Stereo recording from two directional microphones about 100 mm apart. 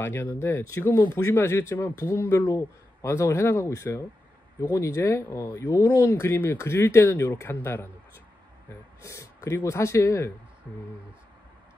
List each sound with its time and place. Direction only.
0.0 s speech: 25° left (ahead or behind)
9.0 s speech: 30° left (ahead or behind)